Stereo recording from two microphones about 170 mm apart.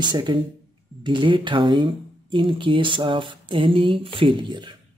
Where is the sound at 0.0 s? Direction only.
25° right (ahead or behind).